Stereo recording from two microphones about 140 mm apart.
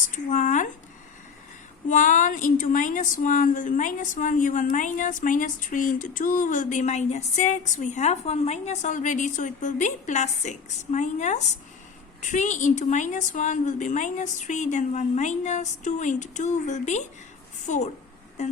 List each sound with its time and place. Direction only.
0.1 s speech: 60° left (ahead or behind)
1.9 s speech: 65° left (ahead or behind)